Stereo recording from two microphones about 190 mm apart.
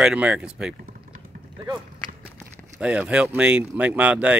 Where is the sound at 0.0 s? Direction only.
5° right (ahead or behind).